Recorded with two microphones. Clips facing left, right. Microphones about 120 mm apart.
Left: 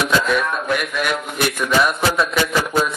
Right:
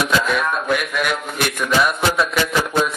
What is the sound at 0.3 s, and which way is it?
A man's voice, centre (ahead or behind).